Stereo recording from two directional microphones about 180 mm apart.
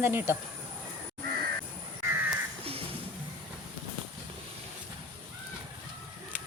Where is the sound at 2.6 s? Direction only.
30° right (ahead or behind).